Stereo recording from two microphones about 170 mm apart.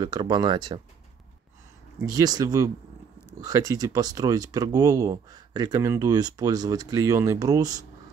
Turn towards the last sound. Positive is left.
turn(degrees=-20)  # may be behind; listen again after turning